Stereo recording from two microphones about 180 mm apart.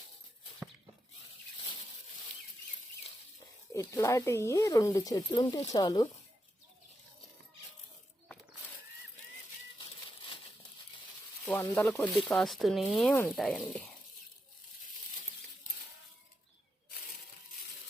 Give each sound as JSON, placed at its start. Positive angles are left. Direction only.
{"t": 3.8, "sound": "speech", "side_deg": 20}
{"t": 11.4, "sound": "speech", "side_deg": 10}